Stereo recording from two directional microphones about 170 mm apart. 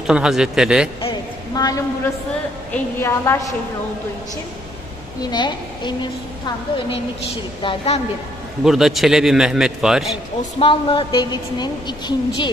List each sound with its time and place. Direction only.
0.0 s a man's voice: 5° right (ahead or behind)
1.5 s a woman's voice: 20° left (ahead or behind)
5.2 s a woman's voice: 25° left (ahead or behind)
7.6 s a woman's voice: 35° left (ahead or behind)
8.6 s a man's voice: centre (ahead or behind)
10.6 s a woman's voice: 30° left (ahead or behind)